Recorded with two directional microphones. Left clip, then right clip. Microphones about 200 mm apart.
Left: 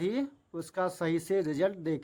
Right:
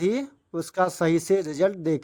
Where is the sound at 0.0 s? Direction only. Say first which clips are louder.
Right 7 dB; 30° right (ahead or behind).